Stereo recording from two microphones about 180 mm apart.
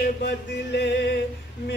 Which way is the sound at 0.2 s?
70° left (ahead or behind).